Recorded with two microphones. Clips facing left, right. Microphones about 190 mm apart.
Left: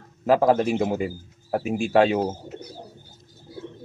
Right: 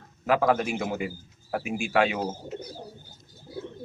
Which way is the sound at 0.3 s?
30° left (ahead or behind).